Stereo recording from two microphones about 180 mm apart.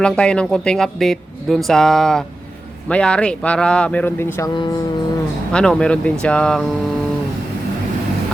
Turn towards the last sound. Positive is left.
turn(degrees=5)  # may be behind; listen again after turning